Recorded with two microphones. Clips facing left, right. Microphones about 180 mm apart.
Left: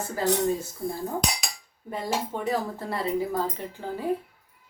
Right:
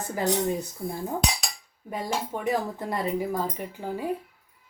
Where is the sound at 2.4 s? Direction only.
15° right (ahead or behind).